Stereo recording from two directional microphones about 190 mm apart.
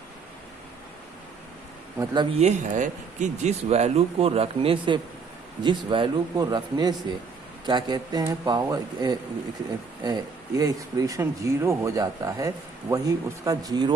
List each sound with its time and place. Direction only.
2.0 s speech: 25° right (ahead or behind)
2.4 s speech: 40° right (ahead or behind); by 13.9 s 20° right (ahead or behind)